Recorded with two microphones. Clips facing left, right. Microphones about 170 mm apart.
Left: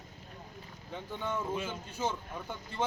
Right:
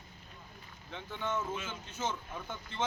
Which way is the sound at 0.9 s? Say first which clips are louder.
Even; 10° left (ahead or behind).